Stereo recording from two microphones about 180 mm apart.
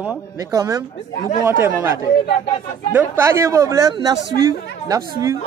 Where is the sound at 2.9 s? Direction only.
15° right (ahead or behind).